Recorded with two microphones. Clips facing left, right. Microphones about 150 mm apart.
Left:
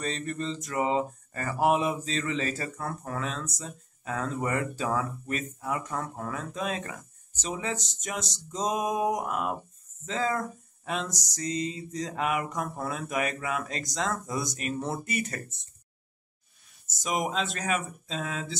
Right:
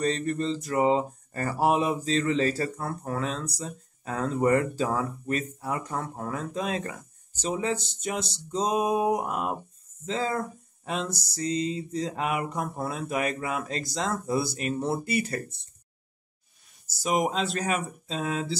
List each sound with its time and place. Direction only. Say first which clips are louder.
0.0 s mantra: right 5 dB; 35° right (ahead or behind)
16.8 s mantra: right 4 dB; 35° right (ahead or behind)